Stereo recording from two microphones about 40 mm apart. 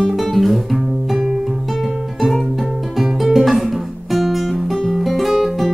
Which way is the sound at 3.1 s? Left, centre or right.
Centre.